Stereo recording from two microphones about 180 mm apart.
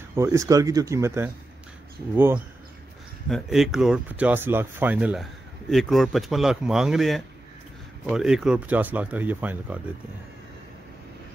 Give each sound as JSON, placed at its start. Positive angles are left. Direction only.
{"t": 0.1, "sound": "speech", "side_deg": -15}
{"t": 3.3, "sound": "speech", "side_deg": 0}